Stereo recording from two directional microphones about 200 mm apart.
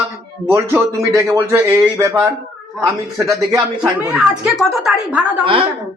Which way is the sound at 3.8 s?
5° right (ahead or behind).